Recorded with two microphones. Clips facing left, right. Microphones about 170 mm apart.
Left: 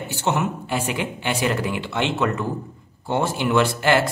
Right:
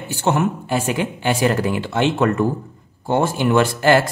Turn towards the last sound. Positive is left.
turn(degrees=-45)  # may be behind; listen again after turning